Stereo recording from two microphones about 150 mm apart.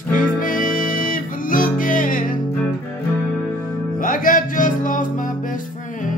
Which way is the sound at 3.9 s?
65° left (ahead or behind).